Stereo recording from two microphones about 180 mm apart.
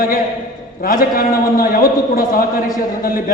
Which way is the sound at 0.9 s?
50° left (ahead or behind).